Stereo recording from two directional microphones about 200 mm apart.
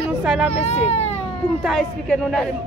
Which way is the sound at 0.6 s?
30° left (ahead or behind).